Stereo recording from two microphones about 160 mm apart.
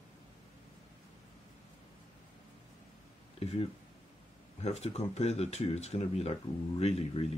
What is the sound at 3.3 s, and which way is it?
Speech, 40° left (ahead or behind).